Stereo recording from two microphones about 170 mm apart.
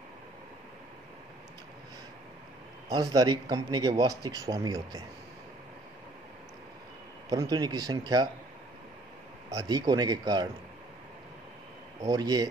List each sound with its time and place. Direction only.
2.9 s speech: 25° right (ahead or behind)
7.2 s speech: 20° right (ahead or behind)
9.5 s speech: 20° right (ahead or behind)
12.1 s speech: 20° right (ahead or behind)